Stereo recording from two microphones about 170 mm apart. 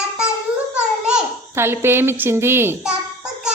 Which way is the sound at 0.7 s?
5° right (ahead or behind).